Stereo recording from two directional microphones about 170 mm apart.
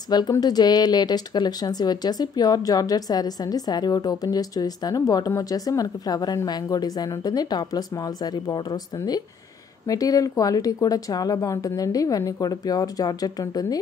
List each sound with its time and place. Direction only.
0.1 s speech: 25° left (ahead or behind)